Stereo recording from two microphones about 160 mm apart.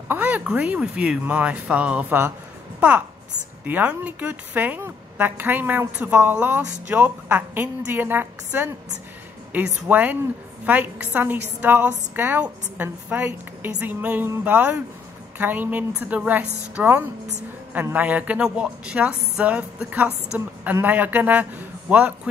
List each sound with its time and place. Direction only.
0.1 s a woman's voice: 10° right (ahead or behind)
3.6 s a woman's voice: 10° right (ahead or behind)
9.8 s a woman's voice: 10° right (ahead or behind)
16.4 s a woman's voice: 45° right (ahead or behind)
16.7 s a woman's voice: 10° right (ahead or behind)